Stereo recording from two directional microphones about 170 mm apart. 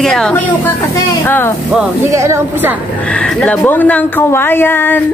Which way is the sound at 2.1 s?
15° right (ahead or behind).